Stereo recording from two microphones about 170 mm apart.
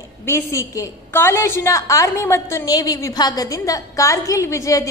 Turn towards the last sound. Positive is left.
turn(degrees=20)  # may be behind; listen again after turning